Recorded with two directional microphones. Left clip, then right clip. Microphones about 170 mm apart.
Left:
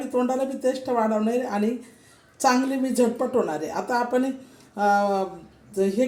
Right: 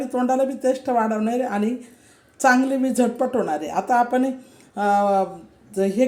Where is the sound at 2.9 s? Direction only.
15° right (ahead or behind).